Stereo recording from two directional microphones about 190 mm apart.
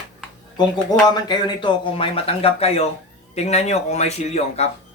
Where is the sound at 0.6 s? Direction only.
20° left (ahead or behind).